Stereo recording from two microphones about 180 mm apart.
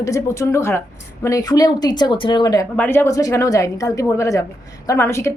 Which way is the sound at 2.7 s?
10° left (ahead or behind).